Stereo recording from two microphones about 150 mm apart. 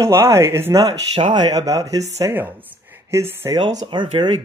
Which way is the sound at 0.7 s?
35° right (ahead or behind).